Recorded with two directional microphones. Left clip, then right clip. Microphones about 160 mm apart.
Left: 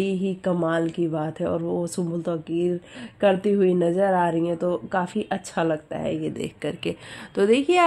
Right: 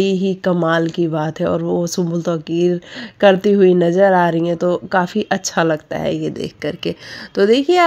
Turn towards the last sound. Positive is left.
turn(degrees=-25)  # may be behind; listen again after turning